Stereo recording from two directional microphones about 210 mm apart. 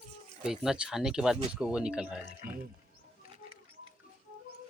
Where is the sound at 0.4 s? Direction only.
5° right (ahead or behind).